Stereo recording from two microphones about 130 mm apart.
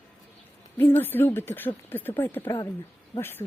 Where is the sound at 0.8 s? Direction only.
15° left (ahead or behind).